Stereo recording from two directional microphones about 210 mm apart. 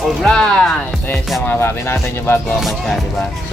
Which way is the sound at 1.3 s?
10° left (ahead or behind).